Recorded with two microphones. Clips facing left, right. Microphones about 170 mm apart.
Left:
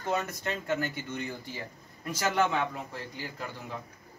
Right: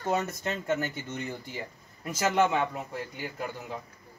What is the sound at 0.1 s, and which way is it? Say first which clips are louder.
Speech: right 2 dB; 20° right (ahead or behind).